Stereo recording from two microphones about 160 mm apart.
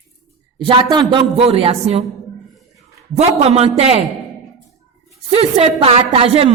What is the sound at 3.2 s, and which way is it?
Speech, 40° right (ahead or behind).